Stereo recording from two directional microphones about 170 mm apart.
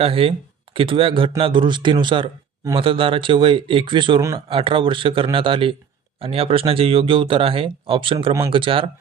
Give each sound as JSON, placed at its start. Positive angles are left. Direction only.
{"t": 0.0, "sound": "speech", "side_deg": -30}